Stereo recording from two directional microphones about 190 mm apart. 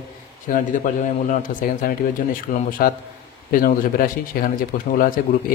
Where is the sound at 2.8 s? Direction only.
50° left (ahead or behind).